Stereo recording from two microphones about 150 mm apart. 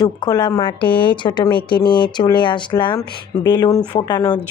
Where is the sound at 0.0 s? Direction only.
25° left (ahead or behind).